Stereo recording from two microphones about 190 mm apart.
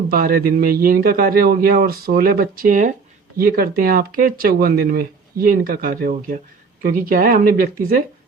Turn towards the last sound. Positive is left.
turn(degrees=-45)  # may be behind; listen again after turning